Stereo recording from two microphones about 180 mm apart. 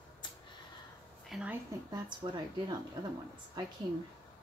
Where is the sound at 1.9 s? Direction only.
25° right (ahead or behind).